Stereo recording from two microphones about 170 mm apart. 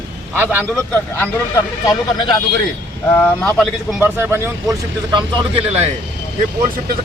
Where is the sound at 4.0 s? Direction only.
10° right (ahead or behind).